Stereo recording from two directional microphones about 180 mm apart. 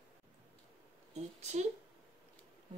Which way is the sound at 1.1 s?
40° right (ahead or behind).